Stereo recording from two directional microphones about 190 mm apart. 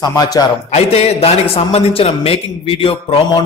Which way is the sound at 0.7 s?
35° left (ahead or behind).